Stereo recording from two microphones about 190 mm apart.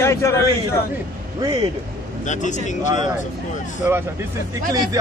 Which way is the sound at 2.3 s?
40° left (ahead or behind).